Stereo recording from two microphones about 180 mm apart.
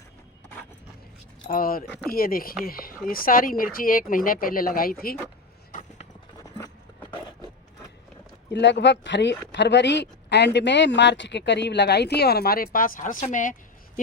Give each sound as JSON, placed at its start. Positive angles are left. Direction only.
{"t": 1.5, "sound": "speech", "side_deg": 50}
{"t": 8.5, "sound": "speech", "side_deg": 75}